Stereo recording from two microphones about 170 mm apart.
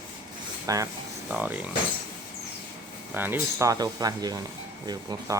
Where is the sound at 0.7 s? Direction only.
20° right (ahead or behind).